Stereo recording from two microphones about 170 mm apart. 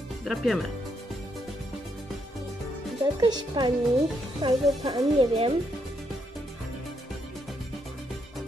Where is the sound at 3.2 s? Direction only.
25° right (ahead or behind).